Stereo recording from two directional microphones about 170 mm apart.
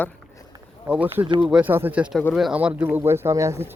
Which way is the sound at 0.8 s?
5° right (ahead or behind).